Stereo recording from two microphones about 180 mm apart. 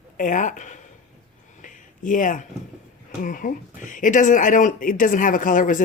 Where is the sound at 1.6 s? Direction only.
45° left (ahead or behind).